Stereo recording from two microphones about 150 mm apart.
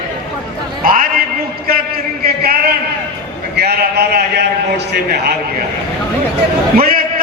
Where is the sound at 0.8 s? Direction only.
70° right (ahead or behind).